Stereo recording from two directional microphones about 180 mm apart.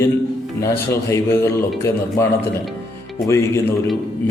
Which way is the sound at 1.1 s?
15° left (ahead or behind).